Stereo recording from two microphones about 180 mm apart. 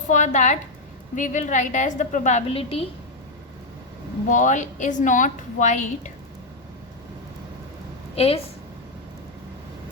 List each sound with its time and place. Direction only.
0.1 s a woman's voice: 40° left (ahead or behind)
4.3 s a woman's voice: 45° left (ahead or behind)
8.1 s a woman's voice: 35° left (ahead or behind)